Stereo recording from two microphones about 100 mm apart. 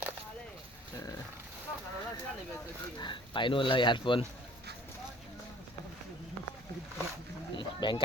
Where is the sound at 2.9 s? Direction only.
50° left (ahead or behind).